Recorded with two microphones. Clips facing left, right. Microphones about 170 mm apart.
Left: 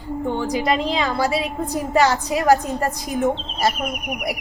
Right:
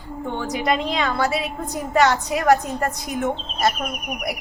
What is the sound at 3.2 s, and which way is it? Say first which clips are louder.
Speech: left 3 dB; 35° left (ahead or behind).